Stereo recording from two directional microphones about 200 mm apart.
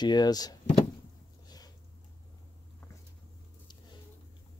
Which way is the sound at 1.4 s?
20° left (ahead or behind).